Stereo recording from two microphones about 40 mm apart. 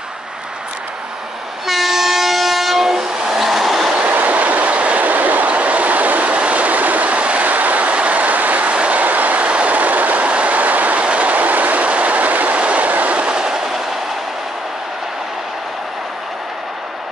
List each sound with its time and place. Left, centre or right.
1.7 s train: centre
4.1 s train: right
8.7 s train: right
9.0 s train: right; by 13.8 s centre